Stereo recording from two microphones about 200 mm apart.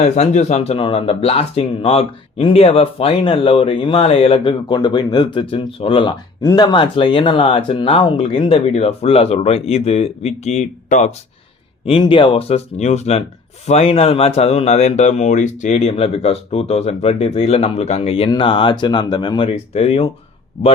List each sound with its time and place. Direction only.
0.0 s speech: 35° left (ahead or behind)
11.9 s speech: 25° left (ahead or behind)